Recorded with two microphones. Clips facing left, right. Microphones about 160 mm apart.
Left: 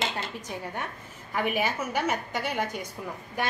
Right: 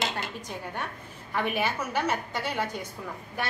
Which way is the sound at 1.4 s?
10° left (ahead or behind).